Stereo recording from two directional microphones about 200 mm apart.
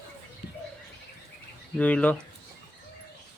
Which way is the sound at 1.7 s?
5° left (ahead or behind).